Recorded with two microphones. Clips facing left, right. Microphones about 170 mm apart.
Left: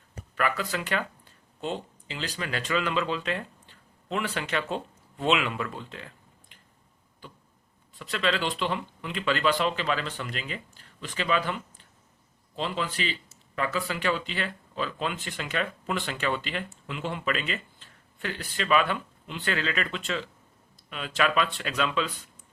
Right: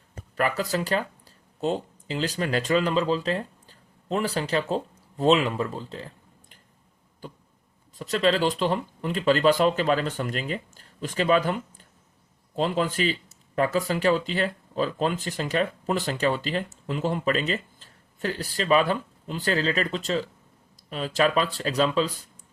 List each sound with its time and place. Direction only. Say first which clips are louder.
0.3 s a man's voice: right 4 dB; 40° right (ahead or behind)